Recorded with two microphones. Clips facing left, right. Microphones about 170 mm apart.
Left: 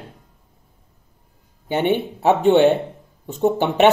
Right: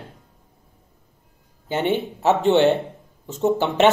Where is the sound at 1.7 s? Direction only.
15° left (ahead or behind).